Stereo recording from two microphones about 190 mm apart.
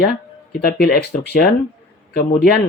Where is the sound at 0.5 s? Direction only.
55° left (ahead or behind).